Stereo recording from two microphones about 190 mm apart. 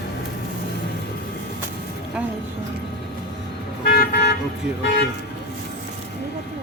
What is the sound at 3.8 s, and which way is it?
Vehicle, 55° left (ahead or behind).